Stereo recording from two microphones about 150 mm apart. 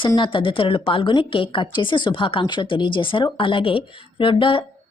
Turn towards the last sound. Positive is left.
turn(degrees=35)  # may be behind; listen again after turning